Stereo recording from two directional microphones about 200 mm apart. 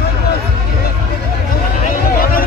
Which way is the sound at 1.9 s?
45° left (ahead or behind).